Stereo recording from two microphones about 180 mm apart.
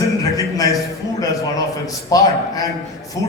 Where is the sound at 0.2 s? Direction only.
20° left (ahead or behind).